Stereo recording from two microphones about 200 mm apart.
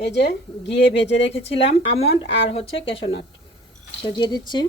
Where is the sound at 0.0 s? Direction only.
60° left (ahead or behind).